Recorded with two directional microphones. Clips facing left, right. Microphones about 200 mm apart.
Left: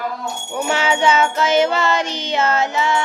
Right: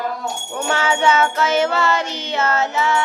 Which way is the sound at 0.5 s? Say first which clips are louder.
Left 2 dB; 15° left (ahead or behind).